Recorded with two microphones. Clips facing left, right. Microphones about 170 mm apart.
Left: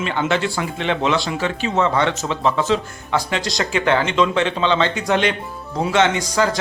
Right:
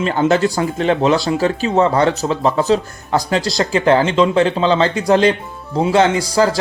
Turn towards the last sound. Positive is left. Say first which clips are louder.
# right 4 dB
turn(degrees=-35)  # may be behind; listen again after turning